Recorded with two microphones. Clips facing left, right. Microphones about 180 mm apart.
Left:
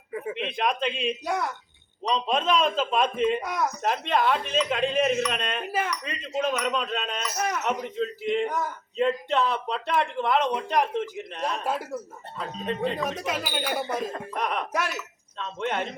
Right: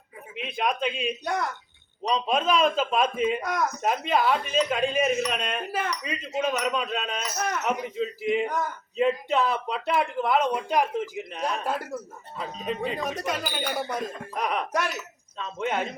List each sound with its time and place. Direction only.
0.3 s speech: 5° right (ahead or behind)